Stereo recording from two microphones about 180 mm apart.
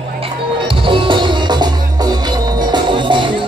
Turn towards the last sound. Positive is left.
turn(degrees=-25)  # may be behind; listen again after turning